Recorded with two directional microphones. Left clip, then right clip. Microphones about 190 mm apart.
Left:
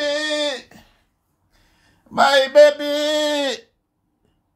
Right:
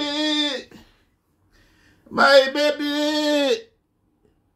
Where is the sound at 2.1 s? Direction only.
45° left (ahead or behind).